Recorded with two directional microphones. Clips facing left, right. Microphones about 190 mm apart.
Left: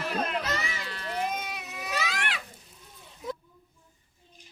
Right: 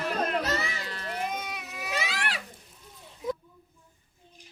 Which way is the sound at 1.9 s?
35° right (ahead or behind).